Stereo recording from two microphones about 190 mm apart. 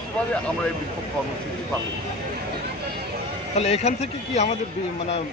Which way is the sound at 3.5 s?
35° left (ahead or behind).